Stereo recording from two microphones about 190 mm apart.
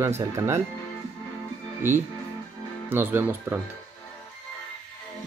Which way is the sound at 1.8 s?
10° right (ahead or behind).